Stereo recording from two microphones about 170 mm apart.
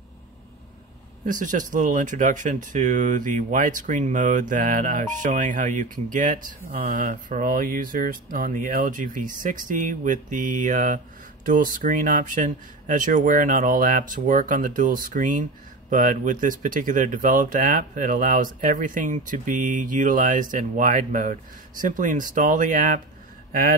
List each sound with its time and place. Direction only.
1.2 s speech: 50° right (ahead or behind)